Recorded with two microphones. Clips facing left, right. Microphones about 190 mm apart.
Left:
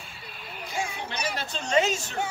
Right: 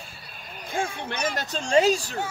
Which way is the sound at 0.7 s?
50° right (ahead or behind).